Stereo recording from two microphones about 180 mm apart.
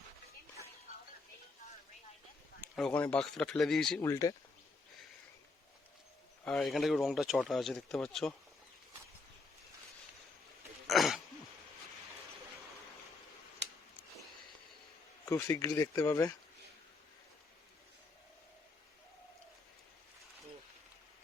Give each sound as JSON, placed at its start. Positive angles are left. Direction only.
{"t": 2.7, "sound": "speech", "side_deg": 5}
{"t": 4.0, "sound": "speech", "side_deg": 15}
{"t": 6.4, "sound": "speech", "side_deg": 5}
{"t": 10.8, "sound": "throat clearing", "side_deg": 0}
{"t": 13.6, "sound": "a sound", "side_deg": -75}
{"t": 15.3, "sound": "speech", "side_deg": 15}